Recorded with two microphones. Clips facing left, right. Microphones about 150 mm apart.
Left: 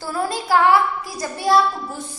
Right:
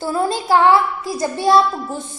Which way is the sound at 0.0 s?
25° right (ahead or behind).